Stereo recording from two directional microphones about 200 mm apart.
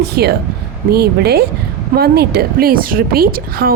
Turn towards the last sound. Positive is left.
turn(degrees=-50)  # may be behind; listen again after turning